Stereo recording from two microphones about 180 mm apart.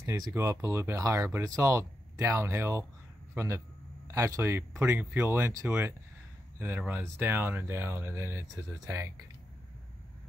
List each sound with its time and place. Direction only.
0.0 s speech: 15° right (ahead or behind)